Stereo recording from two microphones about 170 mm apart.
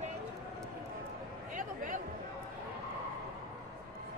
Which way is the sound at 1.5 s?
50° right (ahead or behind).